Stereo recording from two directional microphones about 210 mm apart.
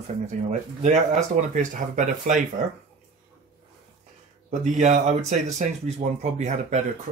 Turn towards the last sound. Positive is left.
turn(degrees=-35)  # may be behind; listen again after turning